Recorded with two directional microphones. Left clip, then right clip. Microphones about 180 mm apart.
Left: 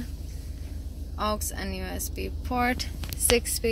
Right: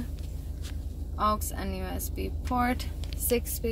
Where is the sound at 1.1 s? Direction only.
5° left (ahead or behind).